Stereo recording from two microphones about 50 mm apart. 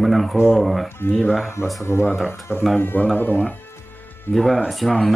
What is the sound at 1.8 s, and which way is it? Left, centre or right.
Speech, left.